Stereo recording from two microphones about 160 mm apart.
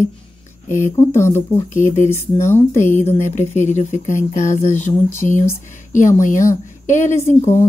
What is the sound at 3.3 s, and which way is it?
Speech, 45° left (ahead or behind).